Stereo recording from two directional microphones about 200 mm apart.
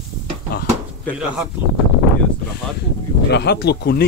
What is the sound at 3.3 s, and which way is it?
Speech, 55° left (ahead or behind).